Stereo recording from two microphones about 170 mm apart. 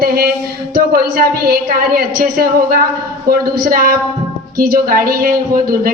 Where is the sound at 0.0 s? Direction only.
60° right (ahead or behind).